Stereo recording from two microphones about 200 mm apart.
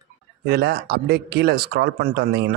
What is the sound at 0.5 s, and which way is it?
Speech, 50° right (ahead or behind).